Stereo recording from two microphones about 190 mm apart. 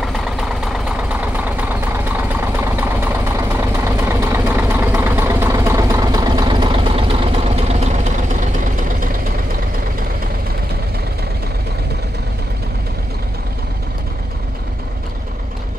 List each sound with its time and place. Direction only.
0.0 s vehicle: 5° right (ahead or behind); by 8.5 s 40° right (ahead or behind)